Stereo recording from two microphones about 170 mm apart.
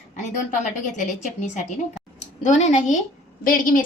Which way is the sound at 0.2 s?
45° left (ahead or behind).